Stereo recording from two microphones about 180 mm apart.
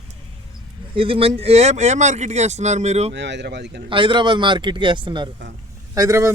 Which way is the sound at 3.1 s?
75° right (ahead or behind).